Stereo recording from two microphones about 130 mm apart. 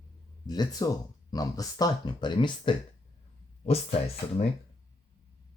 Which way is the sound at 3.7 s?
50° left (ahead or behind).